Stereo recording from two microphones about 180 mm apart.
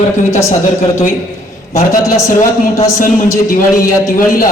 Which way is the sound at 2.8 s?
15° left (ahead or behind).